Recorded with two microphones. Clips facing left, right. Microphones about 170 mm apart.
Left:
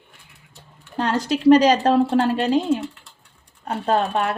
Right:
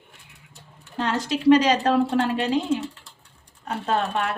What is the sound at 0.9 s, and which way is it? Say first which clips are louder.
A woman's voice: left 3 dB; 40° left (ahead or behind).